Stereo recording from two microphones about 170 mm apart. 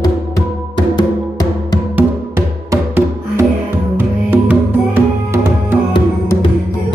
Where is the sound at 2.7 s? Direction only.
15° right (ahead or behind).